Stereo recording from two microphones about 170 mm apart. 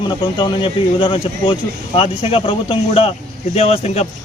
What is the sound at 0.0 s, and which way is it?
Speech, 25° left (ahead or behind).